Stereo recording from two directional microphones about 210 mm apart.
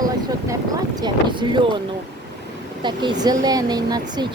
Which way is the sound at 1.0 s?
20° right (ahead or behind).